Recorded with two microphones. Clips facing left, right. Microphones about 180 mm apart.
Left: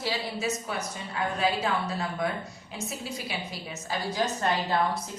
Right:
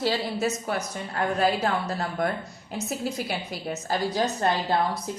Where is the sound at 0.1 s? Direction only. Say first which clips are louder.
Right 4 dB; 50° right (ahead or behind).